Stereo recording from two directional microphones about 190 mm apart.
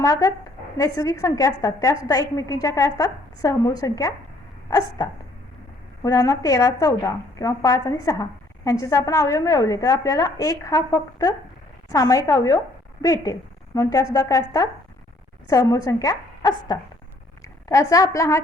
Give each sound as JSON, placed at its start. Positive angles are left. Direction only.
{"t": 0.0, "sound": "a woman's voice", "side_deg": 15}
{"t": 6.0, "sound": "a woman's voice", "side_deg": 20}